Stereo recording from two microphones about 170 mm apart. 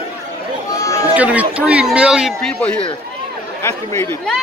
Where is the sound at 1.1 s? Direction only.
10° right (ahead or behind).